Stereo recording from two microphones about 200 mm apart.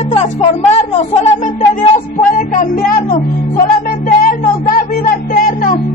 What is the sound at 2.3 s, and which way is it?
Music, 45° left (ahead or behind).